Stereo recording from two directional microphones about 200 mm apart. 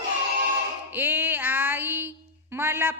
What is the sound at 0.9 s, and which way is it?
Music, 10° right (ahead or behind).